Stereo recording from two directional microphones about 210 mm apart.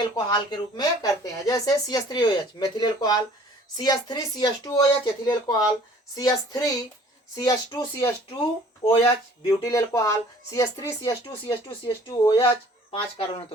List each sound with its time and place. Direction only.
0.0 s speech: 20° left (ahead or behind)
9.5 s speech: 15° left (ahead or behind)